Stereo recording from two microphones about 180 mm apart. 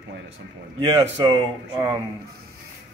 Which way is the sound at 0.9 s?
20° right (ahead or behind).